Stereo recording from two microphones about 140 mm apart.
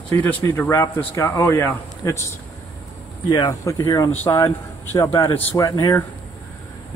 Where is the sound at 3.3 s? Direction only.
25° left (ahead or behind).